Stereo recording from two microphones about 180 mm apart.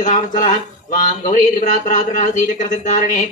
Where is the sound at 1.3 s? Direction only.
45° left (ahead or behind).